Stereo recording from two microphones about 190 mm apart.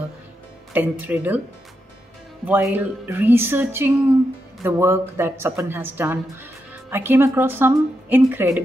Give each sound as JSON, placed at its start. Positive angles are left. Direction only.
{"t": 0.7, "sound": "speech", "side_deg": -10}
{"t": 2.4, "sound": "speech", "side_deg": -10}